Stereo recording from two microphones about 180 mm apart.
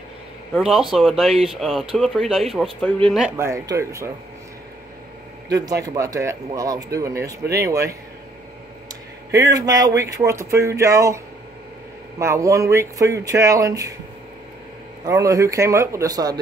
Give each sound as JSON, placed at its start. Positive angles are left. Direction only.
{"t": 0.6, "sound": "speech", "side_deg": 0}
{"t": 3.3, "sound": "speech", "side_deg": -15}
{"t": 5.5, "sound": "speech", "side_deg": -20}
{"t": 9.3, "sound": "speech", "side_deg": -20}
{"t": 12.2, "sound": "speech", "side_deg": -15}
{"t": 15.0, "sound": "speech", "side_deg": -20}